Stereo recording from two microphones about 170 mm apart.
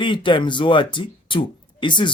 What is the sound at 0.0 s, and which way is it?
Speech, 30° left (ahead or behind).